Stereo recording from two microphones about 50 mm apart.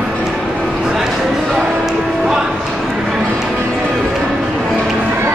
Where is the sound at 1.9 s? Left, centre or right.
Centre.